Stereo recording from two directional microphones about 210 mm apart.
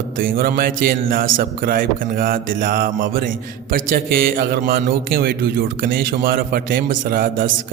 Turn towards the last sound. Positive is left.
turn(degrees=-45)  # may be behind; listen again after turning